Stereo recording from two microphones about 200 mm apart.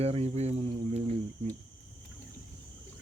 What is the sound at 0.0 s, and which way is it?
Speech, 30° right (ahead or behind).